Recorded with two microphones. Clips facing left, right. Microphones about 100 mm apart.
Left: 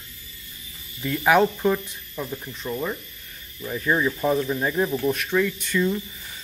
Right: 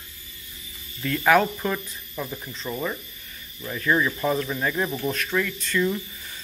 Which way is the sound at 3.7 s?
15° left (ahead or behind).